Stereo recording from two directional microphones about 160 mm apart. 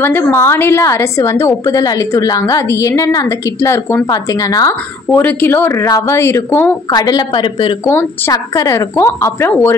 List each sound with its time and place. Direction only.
0.0 s a woman's voice: 15° left (ahead or behind)
6.9 s a woman's voice: 25° left (ahead or behind)
7.8 s a woman's voice: 20° left (ahead or behind)